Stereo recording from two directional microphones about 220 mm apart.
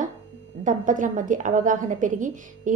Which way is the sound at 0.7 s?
35° right (ahead or behind).